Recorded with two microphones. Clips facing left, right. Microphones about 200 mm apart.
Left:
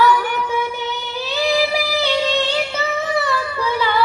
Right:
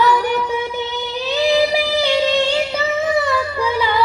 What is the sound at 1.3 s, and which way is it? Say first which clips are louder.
Singing: right 3 dB; 15° right (ahead or behind).